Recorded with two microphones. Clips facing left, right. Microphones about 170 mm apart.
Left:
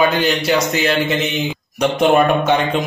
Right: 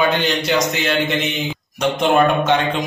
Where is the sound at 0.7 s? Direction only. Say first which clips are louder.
Left 2 dB; centre (ahead or behind).